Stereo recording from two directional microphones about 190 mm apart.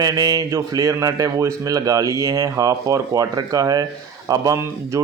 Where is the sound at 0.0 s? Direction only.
20° right (ahead or behind).